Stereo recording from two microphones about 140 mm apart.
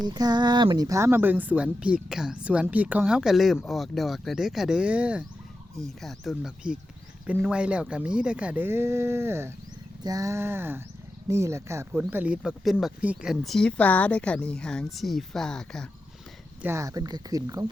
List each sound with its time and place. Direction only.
0.0 s speech: 30° right (ahead or behind); by 5.2 s 10° right (ahead or behind)
5.8 s speech: centre (ahead or behind)
16.6 s speech: 20° right (ahead or behind)